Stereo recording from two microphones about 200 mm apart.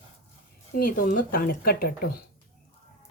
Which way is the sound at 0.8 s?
45° left (ahead or behind).